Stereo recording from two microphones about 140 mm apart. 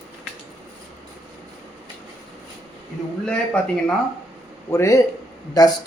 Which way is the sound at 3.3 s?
5° left (ahead or behind).